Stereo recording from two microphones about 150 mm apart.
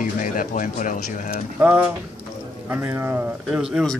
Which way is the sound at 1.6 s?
10° right (ahead or behind).